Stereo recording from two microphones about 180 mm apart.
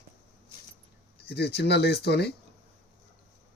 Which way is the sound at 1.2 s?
65° left (ahead or behind).